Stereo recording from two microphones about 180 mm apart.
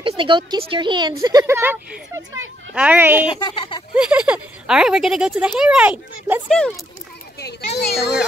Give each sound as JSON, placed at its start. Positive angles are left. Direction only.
{"t": 0.0, "sound": "speech", "side_deg": -25}
{"t": 1.4, "sound": "speech", "side_deg": -10}
{"t": 3.3, "sound": "speech", "side_deg": 25}
{"t": 3.9, "sound": "speech", "side_deg": -5}
{"t": 7.3, "sound": "children playing", "side_deg": 65}